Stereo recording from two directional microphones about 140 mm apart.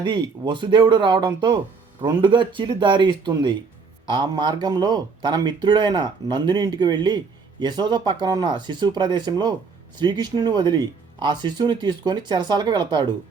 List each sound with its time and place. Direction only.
0.0 s speech: 35° right (ahead or behind)